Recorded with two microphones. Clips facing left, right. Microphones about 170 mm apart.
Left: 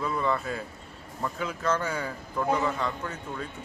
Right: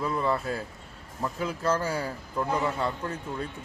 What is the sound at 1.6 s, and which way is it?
Speech, 35° right (ahead or behind).